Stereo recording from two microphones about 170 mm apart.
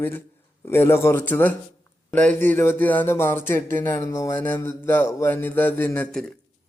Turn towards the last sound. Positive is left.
turn(degrees=10)  # may be behind; listen again after turning